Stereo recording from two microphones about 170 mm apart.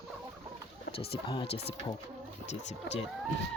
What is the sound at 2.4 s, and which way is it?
Speech, 40° left (ahead or behind).